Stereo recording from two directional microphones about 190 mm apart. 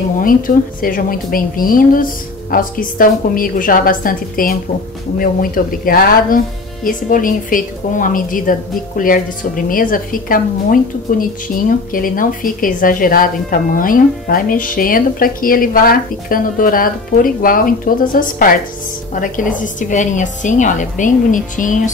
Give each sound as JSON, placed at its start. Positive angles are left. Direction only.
{"t": 0.2, "sound": "a woman's voice", "side_deg": 45}